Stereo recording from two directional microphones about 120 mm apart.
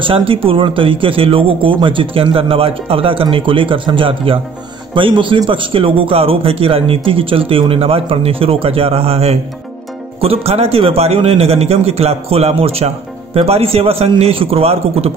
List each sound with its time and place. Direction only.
0.0 s a man's voice: 50° right (ahead or behind)